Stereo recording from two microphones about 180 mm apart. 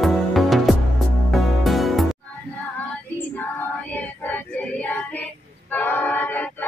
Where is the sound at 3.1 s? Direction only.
10° left (ahead or behind).